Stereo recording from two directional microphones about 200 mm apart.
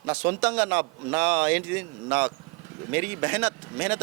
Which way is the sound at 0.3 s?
10° right (ahead or behind).